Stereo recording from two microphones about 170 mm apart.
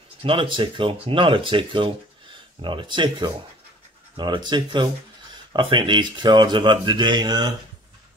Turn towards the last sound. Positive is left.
turn(degrees=-25)  # may be behind; listen again after turning